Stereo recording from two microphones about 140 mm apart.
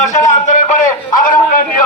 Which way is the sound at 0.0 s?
60° left (ahead or behind).